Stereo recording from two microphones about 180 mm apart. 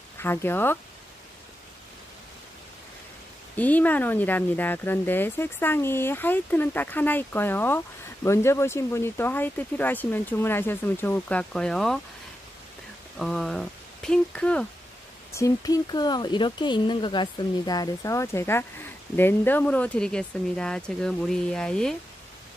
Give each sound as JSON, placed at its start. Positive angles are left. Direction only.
{"t": 0.2, "sound": "speech", "side_deg": 10}
{"t": 3.5, "sound": "speech", "side_deg": 10}
{"t": 13.2, "sound": "speech", "side_deg": 5}
{"t": 15.3, "sound": "speech", "side_deg": 20}